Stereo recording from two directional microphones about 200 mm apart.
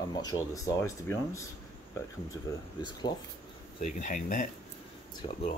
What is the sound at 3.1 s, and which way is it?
Speech, 55° left (ahead or behind).